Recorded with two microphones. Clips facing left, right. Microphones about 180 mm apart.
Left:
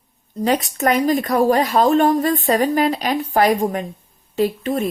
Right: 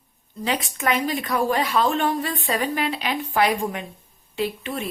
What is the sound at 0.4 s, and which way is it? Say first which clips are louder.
A woman's voice: left 6 dB; 40° left (ahead or behind).